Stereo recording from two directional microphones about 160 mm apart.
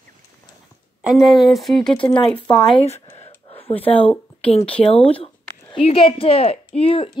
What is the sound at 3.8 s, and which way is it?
Speech, 35° left (ahead or behind).